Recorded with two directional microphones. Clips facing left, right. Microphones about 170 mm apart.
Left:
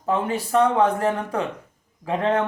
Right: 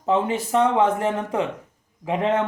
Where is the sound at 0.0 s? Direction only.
20° right (ahead or behind).